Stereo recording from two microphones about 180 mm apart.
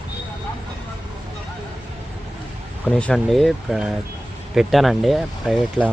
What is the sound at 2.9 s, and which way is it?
Speech, 5° left (ahead or behind).